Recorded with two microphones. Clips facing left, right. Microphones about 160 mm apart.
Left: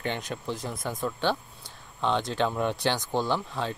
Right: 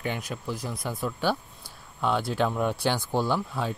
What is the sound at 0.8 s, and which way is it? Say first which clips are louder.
Speech: even; 5° right (ahead or behind).